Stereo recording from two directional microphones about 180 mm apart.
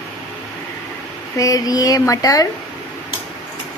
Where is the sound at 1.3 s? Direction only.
20° left (ahead or behind).